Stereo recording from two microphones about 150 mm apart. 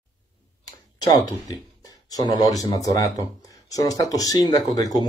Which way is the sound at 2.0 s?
25° left (ahead or behind).